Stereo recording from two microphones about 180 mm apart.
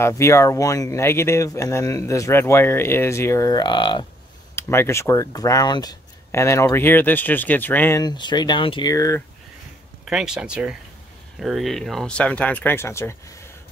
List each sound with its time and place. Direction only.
0.0 s speech: 15° left (ahead or behind)
4.6 s speech: 15° left (ahead or behind)
8.0 s speech: 25° left (ahead or behind)
10.0 s speech: 5° right (ahead or behind); by 13.5 s 15° left (ahead or behind)